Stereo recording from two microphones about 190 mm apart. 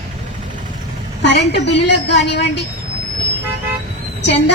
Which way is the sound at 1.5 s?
65° left (ahead or behind).